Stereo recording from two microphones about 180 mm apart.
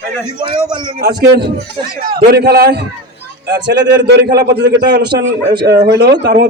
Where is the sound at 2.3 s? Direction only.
60° right (ahead or behind).